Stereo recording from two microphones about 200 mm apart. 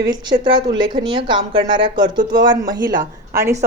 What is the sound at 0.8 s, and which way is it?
A woman's voice, 20° right (ahead or behind).